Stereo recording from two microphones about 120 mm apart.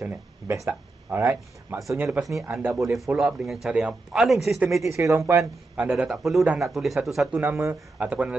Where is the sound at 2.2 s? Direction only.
Centre (ahead or behind).